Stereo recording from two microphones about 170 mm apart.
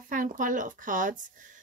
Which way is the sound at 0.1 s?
50° right (ahead or behind).